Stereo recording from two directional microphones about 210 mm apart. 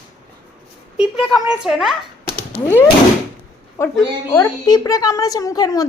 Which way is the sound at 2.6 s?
10° left (ahead or behind).